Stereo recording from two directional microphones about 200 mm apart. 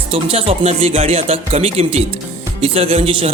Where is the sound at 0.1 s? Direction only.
30° right (ahead or behind).